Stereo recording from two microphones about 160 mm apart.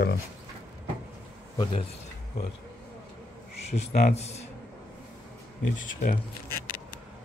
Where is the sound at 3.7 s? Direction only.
45° left (ahead or behind).